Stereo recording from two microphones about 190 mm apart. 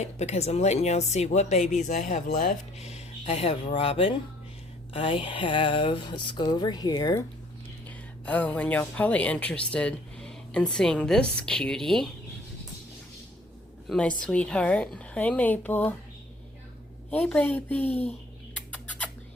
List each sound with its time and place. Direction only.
0.0 s speech: 35° left (ahead or behind)
4.9 s a sound: 30° left (ahead or behind)
7.9 s speech: 10° left (ahead or behind)
13.8 s speech: centre (ahead or behind)
17.1 s speech: 5° left (ahead or behind)
18.5 s bird: 5° left (ahead or behind)